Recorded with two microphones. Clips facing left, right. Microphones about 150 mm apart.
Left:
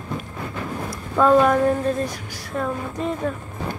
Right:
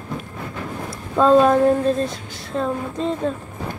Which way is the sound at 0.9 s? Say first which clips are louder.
Right 2 dB; 25° right (ahead or behind).